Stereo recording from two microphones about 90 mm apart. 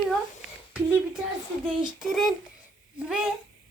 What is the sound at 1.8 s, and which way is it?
A child's voice, 5° right (ahead or behind).